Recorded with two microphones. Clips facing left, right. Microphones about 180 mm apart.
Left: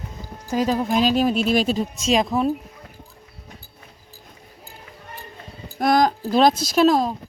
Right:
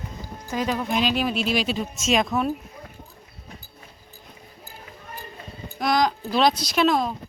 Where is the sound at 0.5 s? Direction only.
35° left (ahead or behind).